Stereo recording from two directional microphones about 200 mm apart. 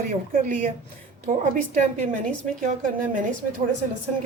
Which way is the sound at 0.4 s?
40° right (ahead or behind).